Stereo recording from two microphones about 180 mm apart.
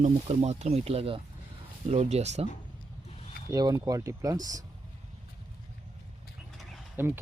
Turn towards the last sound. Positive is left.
turn(degrees=-10)  # may be behind; listen again after turning